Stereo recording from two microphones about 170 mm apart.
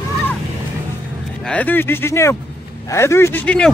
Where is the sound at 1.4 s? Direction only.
10° left (ahead or behind).